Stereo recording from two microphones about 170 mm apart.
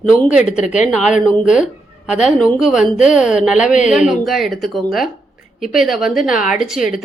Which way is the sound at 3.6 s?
45° left (ahead or behind).